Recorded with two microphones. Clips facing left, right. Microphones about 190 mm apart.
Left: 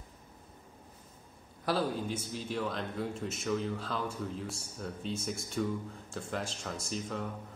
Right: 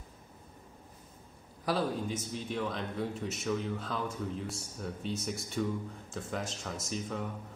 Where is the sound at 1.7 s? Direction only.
Centre (ahead or behind).